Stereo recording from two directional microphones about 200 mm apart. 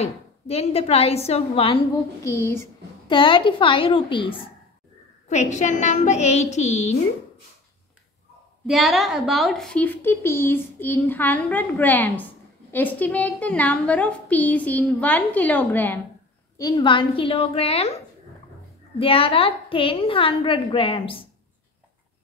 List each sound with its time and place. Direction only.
0.0 s a woman's voice: 30° left (ahead or behind)
2.2 s a woman's voice: 15° left (ahead or behind)
3.1 s a woman's voice: 25° left (ahead or behind)
5.3 s a woman's voice: 35° left (ahead or behind)
8.6 s a woman's voice: centre (ahead or behind)
16.5 s a woman's voice: 20° left (ahead or behind)